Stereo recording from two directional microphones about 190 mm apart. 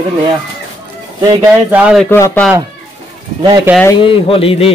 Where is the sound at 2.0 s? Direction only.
15° left (ahead or behind).